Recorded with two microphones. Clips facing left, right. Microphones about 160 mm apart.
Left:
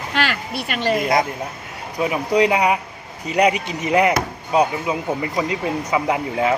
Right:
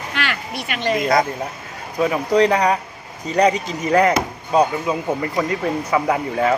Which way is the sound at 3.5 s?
35° right (ahead or behind).